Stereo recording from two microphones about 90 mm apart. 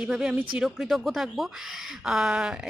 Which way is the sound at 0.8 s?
Centre (ahead or behind).